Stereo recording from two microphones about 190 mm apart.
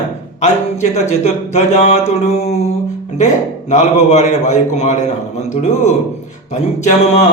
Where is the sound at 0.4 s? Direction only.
35° left (ahead or behind).